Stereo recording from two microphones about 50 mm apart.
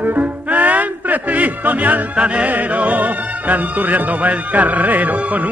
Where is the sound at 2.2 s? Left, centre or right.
Right.